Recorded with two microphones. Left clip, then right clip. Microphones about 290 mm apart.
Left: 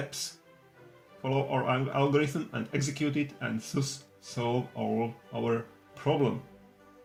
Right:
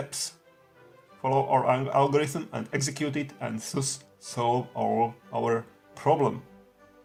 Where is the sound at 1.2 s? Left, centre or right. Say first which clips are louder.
Right 6 dB; right.